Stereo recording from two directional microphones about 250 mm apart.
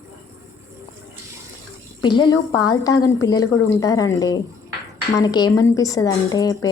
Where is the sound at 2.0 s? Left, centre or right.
Centre.